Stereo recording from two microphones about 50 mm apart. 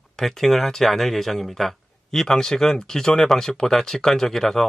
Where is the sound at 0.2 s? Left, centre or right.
Centre.